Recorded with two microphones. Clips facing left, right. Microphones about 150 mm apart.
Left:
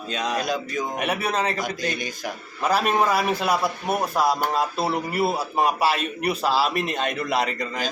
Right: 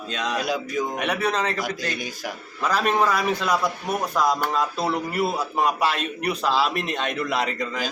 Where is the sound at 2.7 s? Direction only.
10° left (ahead or behind).